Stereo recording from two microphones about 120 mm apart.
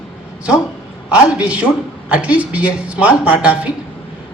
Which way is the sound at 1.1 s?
10° right (ahead or behind).